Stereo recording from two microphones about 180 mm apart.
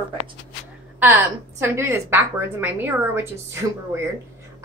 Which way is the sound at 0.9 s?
10° right (ahead or behind).